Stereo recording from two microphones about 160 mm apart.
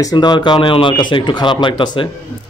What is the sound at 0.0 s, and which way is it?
A man's voice, 25° left (ahead or behind).